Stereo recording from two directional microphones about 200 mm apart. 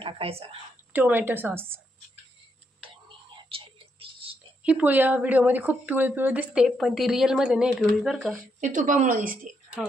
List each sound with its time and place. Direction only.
0.0 s speech: 30° right (ahead or behind)
0.9 s a woman's voice: 10° right (ahead or behind)
3.3 s whispering: 25° right (ahead or behind)
4.6 s a woman's voice: 5° right (ahead or behind)
8.5 s speech: 40° right (ahead or behind)